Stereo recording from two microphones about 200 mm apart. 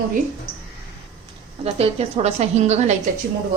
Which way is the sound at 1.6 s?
30° right (ahead or behind).